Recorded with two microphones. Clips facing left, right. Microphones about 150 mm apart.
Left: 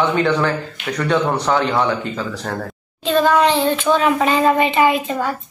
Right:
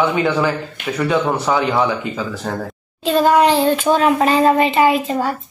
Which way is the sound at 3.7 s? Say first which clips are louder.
Right 2 dB; 40° right (ahead or behind).